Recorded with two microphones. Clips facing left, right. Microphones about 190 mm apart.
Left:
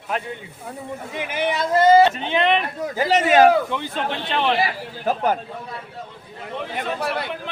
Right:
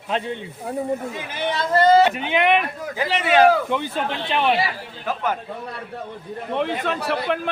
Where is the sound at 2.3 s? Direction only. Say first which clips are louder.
Right 1 dB; 10° right (ahead or behind).